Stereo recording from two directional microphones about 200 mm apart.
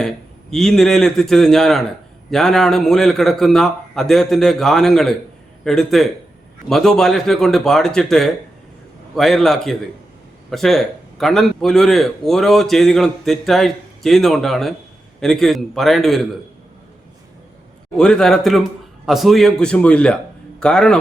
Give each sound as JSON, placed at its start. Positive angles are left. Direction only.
{"t": 0.5, "sound": "a man's voice", "side_deg": 0}
{"t": 17.9, "sound": "a man's voice", "side_deg": 5}